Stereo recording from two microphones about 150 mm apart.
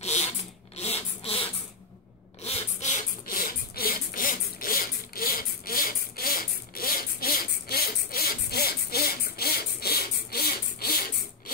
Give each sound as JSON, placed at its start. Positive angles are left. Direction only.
{"t": 0.0, "sound": "rub", "side_deg": 45}
{"t": 0.7, "sound": "a sound", "side_deg": 45}
{"t": 3.3, "sound": "zipper", "side_deg": 70}